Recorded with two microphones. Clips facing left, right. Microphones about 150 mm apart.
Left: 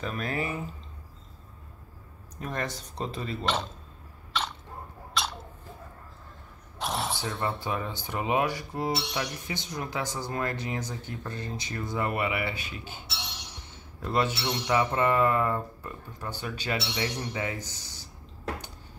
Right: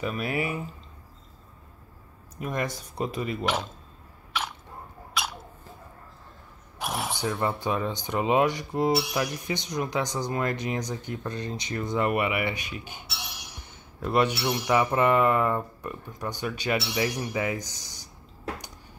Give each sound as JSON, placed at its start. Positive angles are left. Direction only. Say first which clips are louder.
{"t": 0.0, "sound": "speech", "louder": "right 3 dB", "side_deg": -10}
{"t": 2.3, "sound": "speech", "louder": "right 3 dB", "side_deg": -10}
{"t": 4.3, "sound": "a sound", "louder": "even", "side_deg": -10}
{"t": 6.8, "sound": "a sound", "louder": "even", "side_deg": -5}
{"t": 7.4, "sound": "cutlery", "louder": "right 3 dB", "side_deg": -20}
{"t": 9.0, "sound": "speech", "louder": "right 4 dB", "side_deg": -10}